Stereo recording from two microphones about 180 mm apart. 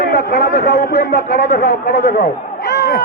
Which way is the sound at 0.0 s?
65° left (ahead or behind).